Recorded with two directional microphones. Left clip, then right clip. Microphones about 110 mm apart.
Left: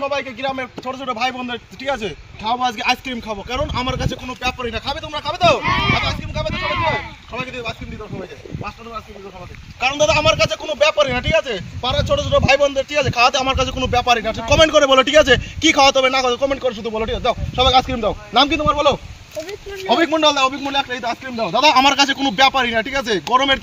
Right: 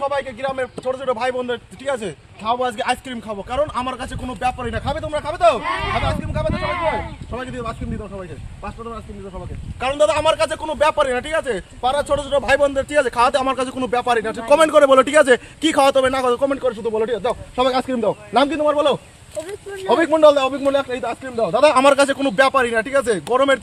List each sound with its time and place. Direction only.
0.1 s a man's voice: 40° right (ahead or behind)
5.8 s speech: 25° right (ahead or behind)
6.5 s speech: 20° right (ahead or behind)
7.3 s a man's voice: 30° right (ahead or behind)
9.8 s a man's voice: 45° right (ahead or behind)
18.7 s speech: 30° right (ahead or behind)
21.5 s a man's voice: 50° right (ahead or behind)